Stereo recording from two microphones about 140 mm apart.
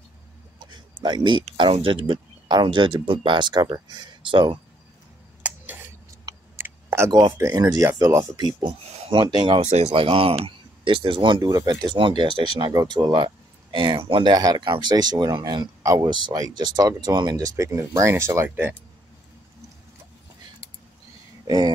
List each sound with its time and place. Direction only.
0.6 s a sound: 30° right (ahead or behind)
1.6 s speech: 40° right (ahead or behind)
5.4 s a sound: 15° right (ahead or behind)
6.5 s clicking: 15° right (ahead or behind)
7.1 s speech: 35° right (ahead or behind)
8.6 s speech: 50° right (ahead or behind); by 18.8 s 15° right (ahead or behind)
21.5 s speech: 30° right (ahead or behind)